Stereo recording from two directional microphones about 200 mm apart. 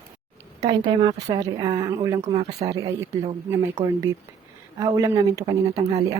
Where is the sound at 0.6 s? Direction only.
25° right (ahead or behind).